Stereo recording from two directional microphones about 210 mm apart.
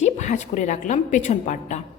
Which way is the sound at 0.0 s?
35° left (ahead or behind).